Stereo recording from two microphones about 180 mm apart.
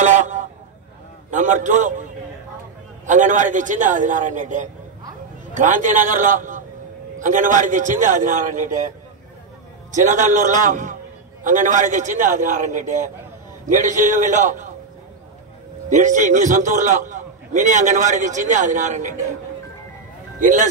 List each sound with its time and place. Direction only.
0.0 s a sound: 45° right (ahead or behind)
1.3 s a man's voice: 45° right (ahead or behind)
3.1 s a man's voice: 45° right (ahead or behind)
10.0 s a man's voice: 45° right (ahead or behind)
15.9 s a man's voice: 45° right (ahead or behind)
20.3 s speech: 45° right (ahead or behind)